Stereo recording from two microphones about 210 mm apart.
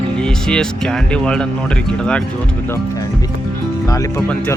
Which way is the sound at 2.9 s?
15° left (ahead or behind).